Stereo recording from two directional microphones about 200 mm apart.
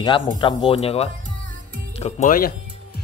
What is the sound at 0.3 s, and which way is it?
Speech, 25° left (ahead or behind).